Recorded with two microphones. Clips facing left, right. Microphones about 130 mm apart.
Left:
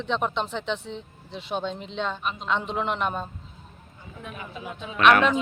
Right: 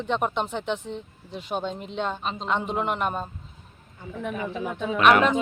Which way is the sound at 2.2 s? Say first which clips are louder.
Right 1 dB; 30° right (ahead or behind).